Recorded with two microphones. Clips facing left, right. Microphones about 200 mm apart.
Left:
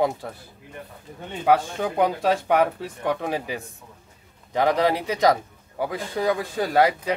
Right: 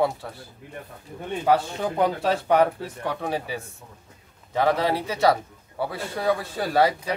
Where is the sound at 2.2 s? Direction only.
15° left (ahead or behind).